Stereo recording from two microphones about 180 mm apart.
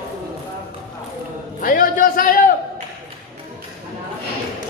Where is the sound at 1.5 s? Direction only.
50° left (ahead or behind).